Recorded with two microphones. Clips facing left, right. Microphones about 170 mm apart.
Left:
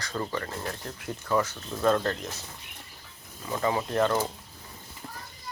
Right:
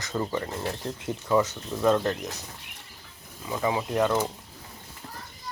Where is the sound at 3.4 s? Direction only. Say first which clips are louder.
Right 1 dB; 10° right (ahead or behind).